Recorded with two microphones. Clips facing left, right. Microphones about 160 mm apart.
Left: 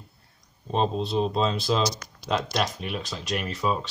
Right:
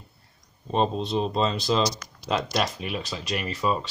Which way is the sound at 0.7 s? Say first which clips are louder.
Right 1 dB; centre (ahead or behind).